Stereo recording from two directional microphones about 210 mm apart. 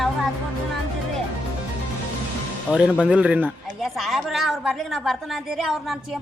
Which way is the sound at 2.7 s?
5° right (ahead or behind).